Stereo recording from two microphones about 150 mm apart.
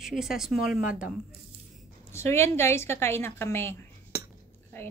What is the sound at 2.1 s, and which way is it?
A woman's voice, 15° left (ahead or behind).